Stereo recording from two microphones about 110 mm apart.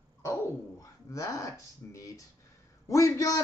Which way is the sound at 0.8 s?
30° left (ahead or behind).